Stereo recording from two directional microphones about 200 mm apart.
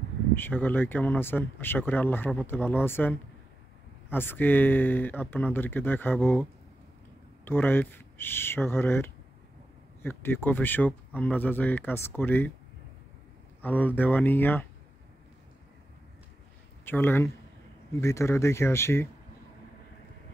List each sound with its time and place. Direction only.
0.3 s speech: 10° left (ahead or behind)
7.4 s speech: 10° left (ahead or behind)
13.6 s speech: 10° left (ahead or behind)
16.8 s speech: 10° left (ahead or behind)